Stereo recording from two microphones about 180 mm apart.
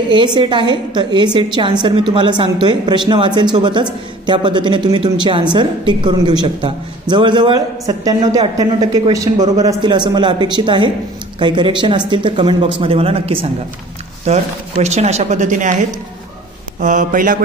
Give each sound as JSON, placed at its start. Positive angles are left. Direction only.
{"t": 0.1, "sound": "a woman's voice", "side_deg": -25}
{"t": 16.8, "sound": "speech", "side_deg": -45}